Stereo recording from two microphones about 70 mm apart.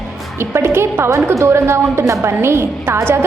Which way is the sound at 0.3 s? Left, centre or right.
Right.